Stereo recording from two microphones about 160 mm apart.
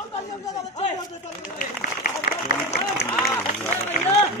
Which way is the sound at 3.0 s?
15° left (ahead or behind).